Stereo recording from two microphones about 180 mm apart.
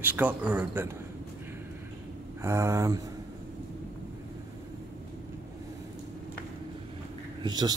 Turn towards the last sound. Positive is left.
turn(degrees=-25)  # may be behind; listen again after turning